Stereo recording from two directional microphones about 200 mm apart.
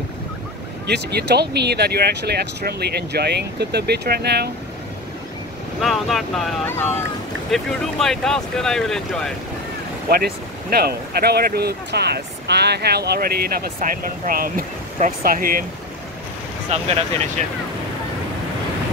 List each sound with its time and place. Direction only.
0.8 s speech: 55° right (ahead or behind)
5.8 s speech: centre (ahead or behind)
10.0 s speech: 50° right (ahead or behind)
16.7 s speech: 35° right (ahead or behind)